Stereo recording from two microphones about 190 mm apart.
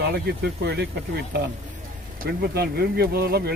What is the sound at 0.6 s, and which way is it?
Speech, 60° right (ahead or behind).